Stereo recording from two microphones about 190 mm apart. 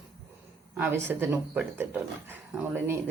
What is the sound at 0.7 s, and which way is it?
A woman's voice, 10° right (ahead or behind).